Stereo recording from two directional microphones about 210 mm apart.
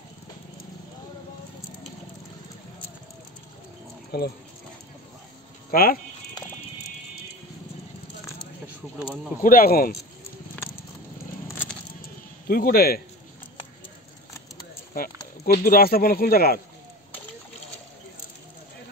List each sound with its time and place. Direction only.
4.1 s speech: 50° left (ahead or behind)
5.7 s speech: 45° left (ahead or behind)
8.6 s speech: 10° right (ahead or behind)
9.4 s speech: 45° left (ahead or behind)
10.5 s horse: 10° left (ahead or behind)
12.4 s speech: 45° left (ahead or behind)
15.4 s speech: 45° left (ahead or behind)